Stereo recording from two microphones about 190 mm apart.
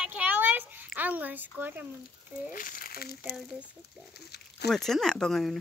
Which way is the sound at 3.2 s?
Centre (ahead or behind).